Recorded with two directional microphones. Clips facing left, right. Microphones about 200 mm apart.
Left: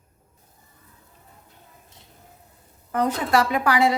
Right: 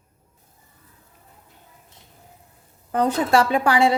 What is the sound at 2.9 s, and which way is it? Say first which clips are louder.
A woman's voice: right 3 dB; 30° right (ahead or behind).